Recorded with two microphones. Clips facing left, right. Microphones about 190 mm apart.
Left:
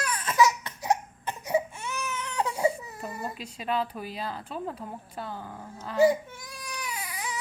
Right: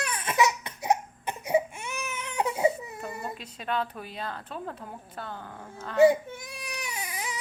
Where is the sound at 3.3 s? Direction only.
5° left (ahead or behind).